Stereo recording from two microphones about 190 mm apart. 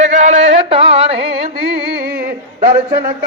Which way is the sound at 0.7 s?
30° right (ahead or behind).